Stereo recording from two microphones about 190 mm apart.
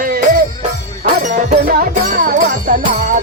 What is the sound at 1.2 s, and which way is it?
Music, 40° right (ahead or behind).